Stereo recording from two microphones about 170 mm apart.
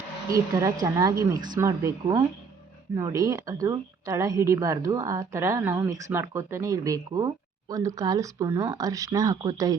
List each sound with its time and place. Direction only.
0.3 s speech: 20° right (ahead or behind)